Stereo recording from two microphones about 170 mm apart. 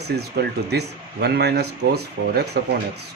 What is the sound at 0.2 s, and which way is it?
Speech, 75° right (ahead or behind).